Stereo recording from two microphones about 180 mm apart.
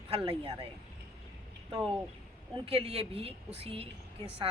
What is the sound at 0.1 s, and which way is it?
Speech, 30° right (ahead or behind).